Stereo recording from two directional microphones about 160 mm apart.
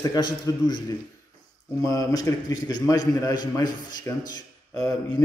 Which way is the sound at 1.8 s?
20° left (ahead or behind).